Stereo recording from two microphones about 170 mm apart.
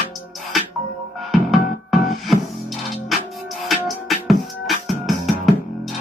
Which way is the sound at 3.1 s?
Centre (ahead or behind).